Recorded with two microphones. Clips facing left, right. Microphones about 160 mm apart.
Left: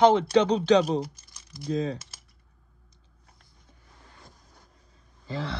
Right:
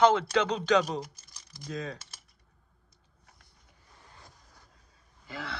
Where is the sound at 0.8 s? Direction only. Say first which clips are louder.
Left 5 dB; 35° left (ahead or behind).